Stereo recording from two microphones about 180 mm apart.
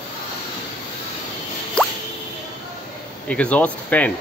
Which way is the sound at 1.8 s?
5° left (ahead or behind).